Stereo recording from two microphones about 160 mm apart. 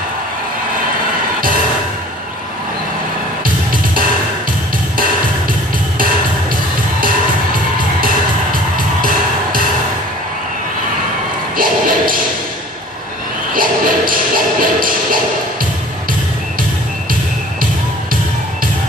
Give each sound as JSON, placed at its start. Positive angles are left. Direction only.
{"t": 8.7, "sound": "music", "side_deg": -60}
{"t": 11.5, "sound": "music", "side_deg": -60}
{"t": 13.5, "sound": "music", "side_deg": -60}